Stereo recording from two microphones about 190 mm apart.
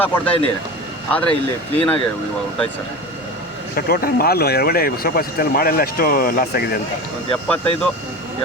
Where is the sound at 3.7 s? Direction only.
55° left (ahead or behind).